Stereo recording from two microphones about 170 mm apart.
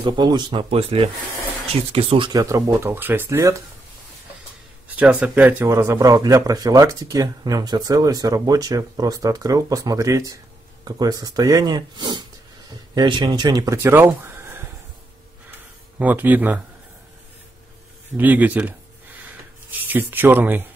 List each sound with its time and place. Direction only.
0.0 s speech: 25° right (ahead or behind)
4.8 s speech: 10° right (ahead or behind)
16.0 s speech: 10° right (ahead or behind)
18.1 s speech: 10° right (ahead or behind)